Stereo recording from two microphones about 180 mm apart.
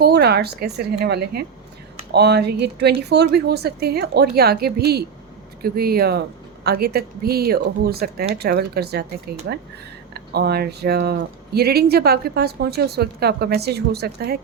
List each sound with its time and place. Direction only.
0.0 s speech: 65° right (ahead or behind)